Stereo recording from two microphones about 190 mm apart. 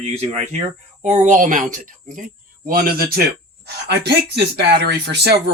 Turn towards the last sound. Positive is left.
turn(degrees=-60)  # may be behind; listen again after turning